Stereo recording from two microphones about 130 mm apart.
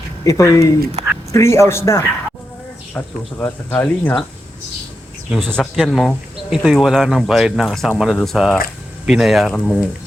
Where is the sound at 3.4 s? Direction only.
15° left (ahead or behind).